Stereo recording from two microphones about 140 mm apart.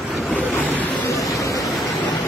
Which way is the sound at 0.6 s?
10° left (ahead or behind).